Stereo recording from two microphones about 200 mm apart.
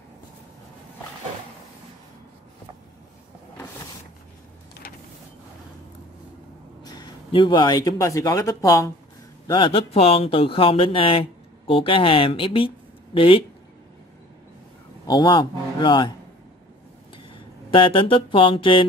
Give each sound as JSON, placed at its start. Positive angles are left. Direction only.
{"t": 6.8, "sound": "a man's voice", "side_deg": 20}
{"t": 15.0, "sound": "speech", "side_deg": 20}
{"t": 17.6, "sound": "speech", "side_deg": 25}